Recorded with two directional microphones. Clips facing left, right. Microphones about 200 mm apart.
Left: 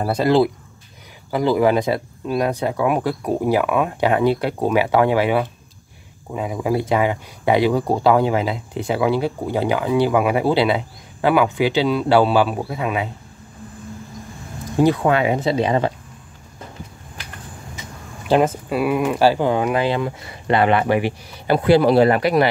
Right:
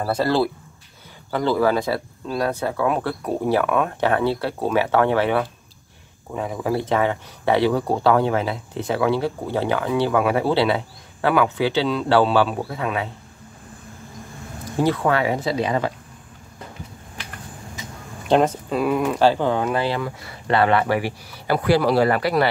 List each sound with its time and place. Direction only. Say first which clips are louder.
0.0 s speech: left 4 dB; 15° left (ahead or behind)
14.8 s speech: left 3 dB; 15° left (ahead or behind)
18.3 s speech: left 1 dB; 5° left (ahead or behind)